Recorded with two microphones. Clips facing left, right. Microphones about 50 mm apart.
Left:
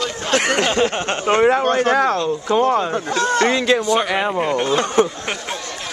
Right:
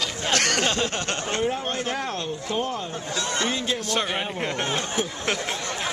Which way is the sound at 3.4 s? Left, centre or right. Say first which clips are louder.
Left 10 dB; left.